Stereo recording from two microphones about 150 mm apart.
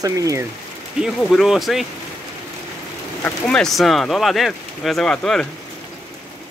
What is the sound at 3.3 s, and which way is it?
Speech, 5° left (ahead or behind).